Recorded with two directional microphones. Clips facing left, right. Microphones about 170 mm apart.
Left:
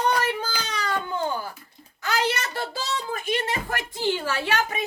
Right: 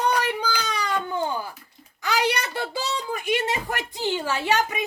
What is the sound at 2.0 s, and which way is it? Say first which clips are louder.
Speech: right 1 dB; 15° right (ahead or behind).